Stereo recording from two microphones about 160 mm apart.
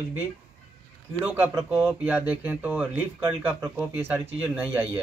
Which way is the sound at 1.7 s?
Centre (ahead or behind).